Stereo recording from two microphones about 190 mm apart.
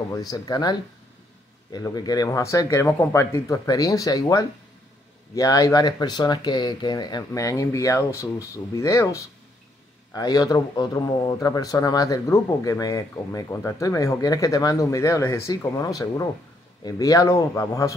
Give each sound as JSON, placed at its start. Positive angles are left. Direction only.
{"t": 0.1, "sound": "speech", "side_deg": 20}